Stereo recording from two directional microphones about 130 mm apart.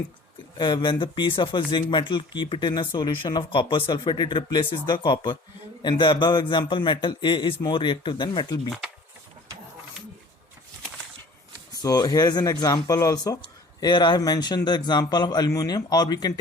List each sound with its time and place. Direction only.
0.5 s speech: 35° left (ahead or behind)
11.7 s speech: 25° left (ahead or behind)